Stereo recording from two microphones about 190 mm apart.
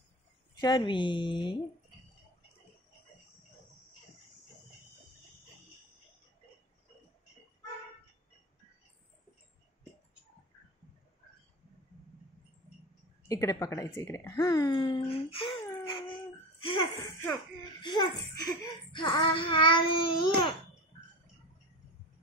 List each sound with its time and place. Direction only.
0.6 s child singing: 25° left (ahead or behind)
13.3 s speech: 20° left (ahead or behind)
15.0 s child singing: 30° left (ahead or behind)
17.0 s speech: 10° left (ahead or behind)
17.8 s child singing: 20° left (ahead or behind)